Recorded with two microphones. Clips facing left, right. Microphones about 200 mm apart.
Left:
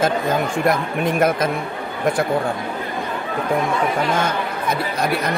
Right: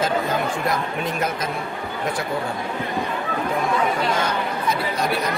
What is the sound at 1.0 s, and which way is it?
Speech, 55° left (ahead or behind).